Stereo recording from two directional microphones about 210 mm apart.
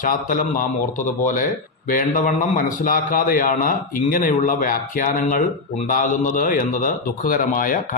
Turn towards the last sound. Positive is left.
turn(degrees=40)  # may be behind; listen again after turning